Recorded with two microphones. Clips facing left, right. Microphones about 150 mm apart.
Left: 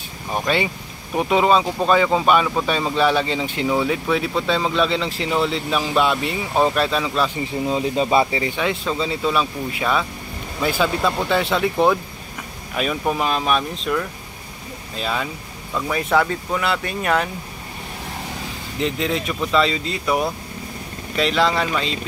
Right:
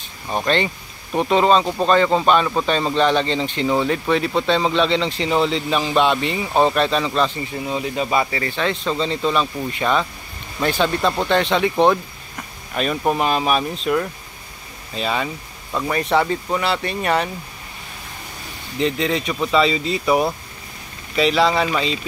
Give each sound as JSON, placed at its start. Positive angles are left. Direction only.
{"t": 0.5, "sound": "a man's voice", "side_deg": 10}
{"t": 7.6, "sound": "a man's voice", "side_deg": 30}
{"t": 12.7, "sound": "a man's voice", "side_deg": 5}
{"t": 18.8, "sound": "a man's voice", "side_deg": 0}